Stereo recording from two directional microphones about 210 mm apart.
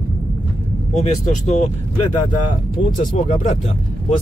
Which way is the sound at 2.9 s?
40° left (ahead or behind).